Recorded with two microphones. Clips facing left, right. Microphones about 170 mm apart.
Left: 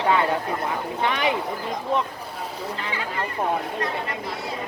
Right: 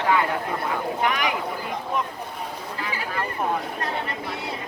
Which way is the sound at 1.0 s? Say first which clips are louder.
Left 3 dB; 25° left (ahead or behind).